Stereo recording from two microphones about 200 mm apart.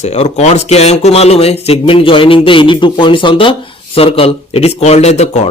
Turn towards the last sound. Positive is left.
turn(degrees=35)  # may be behind; listen again after turning